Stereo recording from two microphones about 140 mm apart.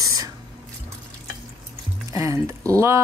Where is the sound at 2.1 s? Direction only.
20° right (ahead or behind).